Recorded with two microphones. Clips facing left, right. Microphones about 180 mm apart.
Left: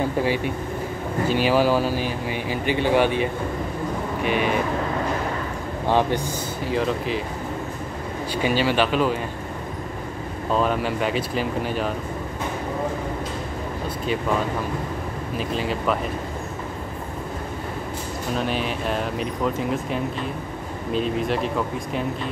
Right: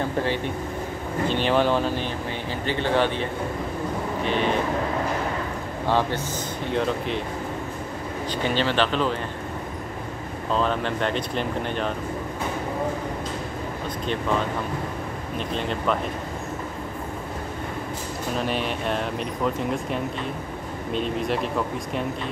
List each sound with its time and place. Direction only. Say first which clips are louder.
0.2 s speech: left 2 dB; 10° left (ahead or behind)
5.9 s speech: left 3 dB; 15° left (ahead or behind)
6.6 s speech: left 1 dB; centre (ahead or behind)
8.4 s speech: left 2 dB; 10° left (ahead or behind)
10.5 s speech: left 2 dB; 10° left (ahead or behind)
15.3 s speech: left 2 dB; 5° left (ahead or behind)
18.3 s speech: left 1 dB; centre (ahead or behind)